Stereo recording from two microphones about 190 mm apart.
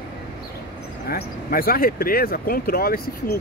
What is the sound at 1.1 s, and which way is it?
Speech, 50° left (ahead or behind).